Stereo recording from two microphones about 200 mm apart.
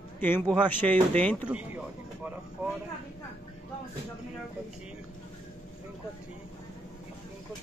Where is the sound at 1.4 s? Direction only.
5° right (ahead or behind).